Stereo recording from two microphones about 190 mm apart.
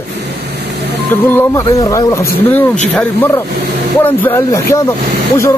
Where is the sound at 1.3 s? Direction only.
15° left (ahead or behind).